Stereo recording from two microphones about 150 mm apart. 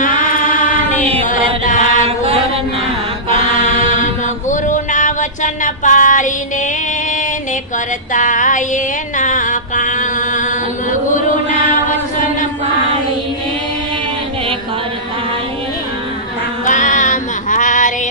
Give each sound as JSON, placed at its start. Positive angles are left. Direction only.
{"t": 0.0, "sound": "choir", "side_deg": 60}
{"t": 1.8, "sound": "chant", "side_deg": -40}
{"t": 4.0, "sound": "a sound", "side_deg": 55}
{"t": 8.1, "sound": "music", "side_deg": 60}
{"t": 11.1, "sound": "chant", "side_deg": 60}
{"t": 16.6, "sound": "female singing", "side_deg": 55}